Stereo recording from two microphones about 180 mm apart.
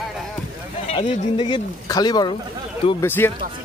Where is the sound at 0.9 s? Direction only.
30° left (ahead or behind).